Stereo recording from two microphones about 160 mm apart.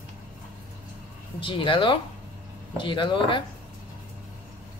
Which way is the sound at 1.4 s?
30° left (ahead or behind).